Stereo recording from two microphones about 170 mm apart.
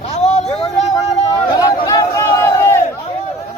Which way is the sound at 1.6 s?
20° left (ahead or behind).